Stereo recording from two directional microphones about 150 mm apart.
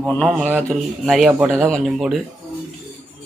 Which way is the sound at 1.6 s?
Centre (ahead or behind).